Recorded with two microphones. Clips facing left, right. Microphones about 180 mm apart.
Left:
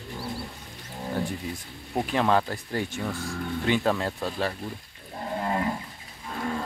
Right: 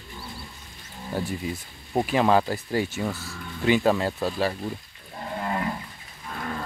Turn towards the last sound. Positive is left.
turn(degrees=15)  # may be behind; listen again after turning